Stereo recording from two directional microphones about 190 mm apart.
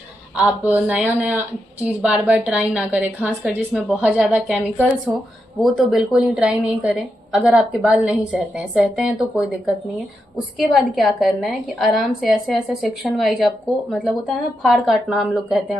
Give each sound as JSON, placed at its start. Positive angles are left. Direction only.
{"t": 0.4, "sound": "a woman's voice", "side_deg": -5}
{"t": 5.1, "sound": "speech", "side_deg": -15}
{"t": 5.6, "sound": "a woman's voice", "side_deg": 0}
{"t": 10.6, "sound": "a woman's voice", "side_deg": 0}